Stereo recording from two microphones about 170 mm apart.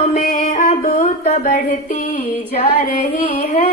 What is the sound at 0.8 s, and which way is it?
Child singing, 55° left (ahead or behind).